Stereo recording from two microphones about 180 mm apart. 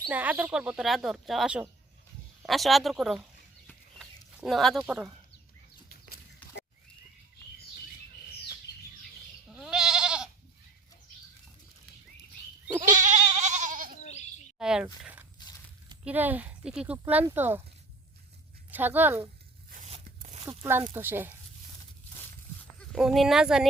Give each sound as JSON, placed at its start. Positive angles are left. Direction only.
{"t": 0.1, "sound": "speech", "side_deg": -10}
{"t": 3.7, "sound": "a sound", "side_deg": 0}
{"t": 5.9, "sound": "a sound", "side_deg": 55}
{"t": 9.5, "sound": "goat", "side_deg": -5}
{"t": 12.9, "sound": "goat", "side_deg": -45}
{"t": 14.0, "sound": "bleat", "side_deg": 40}
{"t": 14.6, "sound": "speech", "side_deg": -5}
{"t": 15.0, "sound": "a sound", "side_deg": -10}
{"t": 16.0, "sound": "speech", "side_deg": -10}
{"t": 18.7, "sound": "speech", "side_deg": -10}
{"t": 19.7, "sound": "crunch", "side_deg": -45}
{"t": 20.4, "sound": "speech", "side_deg": -20}
{"t": 22.9, "sound": "speech", "side_deg": 0}